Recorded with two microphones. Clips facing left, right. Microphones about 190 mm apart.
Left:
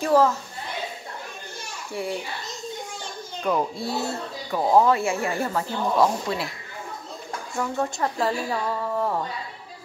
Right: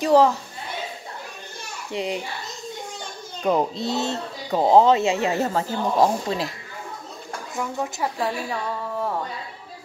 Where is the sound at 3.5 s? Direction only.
25° right (ahead or behind).